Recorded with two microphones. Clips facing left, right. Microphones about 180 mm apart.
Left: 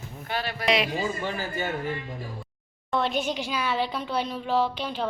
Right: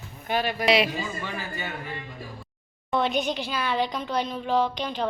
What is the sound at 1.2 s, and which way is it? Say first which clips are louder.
Speech: left 4 dB; 40° left (ahead or behind).